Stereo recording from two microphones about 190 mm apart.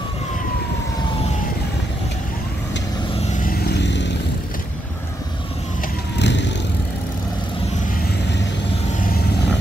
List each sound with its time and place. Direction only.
3.2 s vehicle: 40° left (ahead or behind)
3.5 s vehicle: 60° left (ahead or behind)
6.1 s vehicle: 65° left (ahead or behind)